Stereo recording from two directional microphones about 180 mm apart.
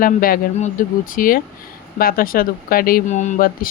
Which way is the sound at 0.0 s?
50° left (ahead or behind).